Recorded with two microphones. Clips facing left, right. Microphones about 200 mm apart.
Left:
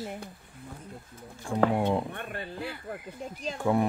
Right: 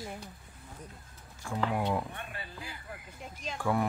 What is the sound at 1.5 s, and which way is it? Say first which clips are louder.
Speech: left 6 dB; 30° left (ahead or behind).